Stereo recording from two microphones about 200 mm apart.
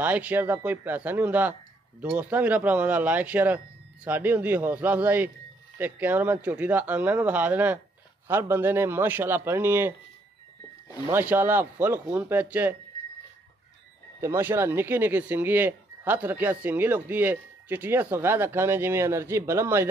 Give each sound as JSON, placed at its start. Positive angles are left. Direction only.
{"t": 0.0, "sound": "speech", "side_deg": -10}
{"t": 11.1, "sound": "speech", "side_deg": -10}
{"t": 14.2, "sound": "speech", "side_deg": -15}